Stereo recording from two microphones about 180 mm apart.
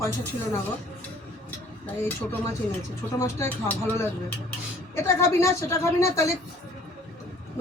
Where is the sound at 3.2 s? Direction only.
10° left (ahead or behind).